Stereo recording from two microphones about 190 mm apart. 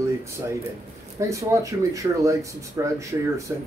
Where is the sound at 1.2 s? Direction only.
15° right (ahead or behind).